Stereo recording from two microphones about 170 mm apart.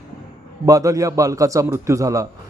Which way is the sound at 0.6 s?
20° right (ahead or behind).